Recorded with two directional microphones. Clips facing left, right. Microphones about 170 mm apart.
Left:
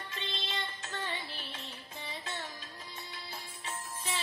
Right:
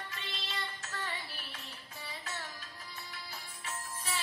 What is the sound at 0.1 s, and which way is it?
Music, 20° left (ahead or behind).